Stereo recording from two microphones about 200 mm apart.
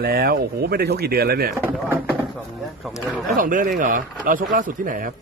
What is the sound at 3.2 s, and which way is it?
A man's voice, 40° right (ahead or behind).